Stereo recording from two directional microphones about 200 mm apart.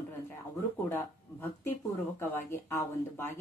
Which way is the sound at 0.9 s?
10° left (ahead or behind).